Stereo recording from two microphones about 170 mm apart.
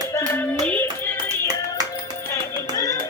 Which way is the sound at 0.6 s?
10° left (ahead or behind).